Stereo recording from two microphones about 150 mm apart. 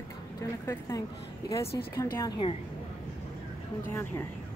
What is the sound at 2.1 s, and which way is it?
Speech, 25° left (ahead or behind).